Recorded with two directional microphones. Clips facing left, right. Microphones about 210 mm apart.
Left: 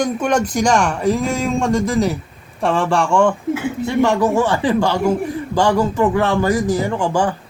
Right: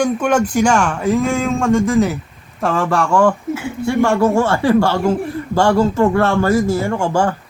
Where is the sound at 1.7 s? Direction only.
35° left (ahead or behind); by 6.9 s 15° left (ahead or behind).